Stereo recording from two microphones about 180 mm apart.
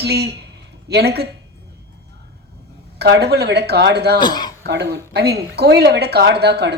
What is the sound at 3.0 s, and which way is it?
Speech, 65° right (ahead or behind).